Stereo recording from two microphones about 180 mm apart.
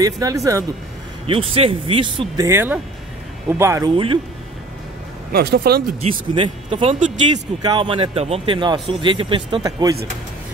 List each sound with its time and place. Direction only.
0.0 s a man's voice: 20° right (ahead or behind)
1.2 s speech: 30° right (ahead or behind)
2.4 s speech: 15° right (ahead or behind)
3.9 s a man's voice: 30° right (ahead or behind)
5.3 s speech: 60° right (ahead or behind)
6.3 s a man's voice: 30° right (ahead or behind)